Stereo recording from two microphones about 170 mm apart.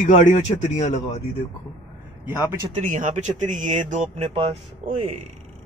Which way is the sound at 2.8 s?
50° right (ahead or behind).